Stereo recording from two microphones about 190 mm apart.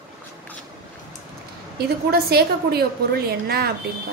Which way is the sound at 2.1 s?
55° right (ahead or behind).